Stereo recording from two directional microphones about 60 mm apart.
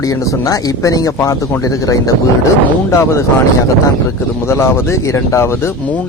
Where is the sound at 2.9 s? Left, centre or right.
Left.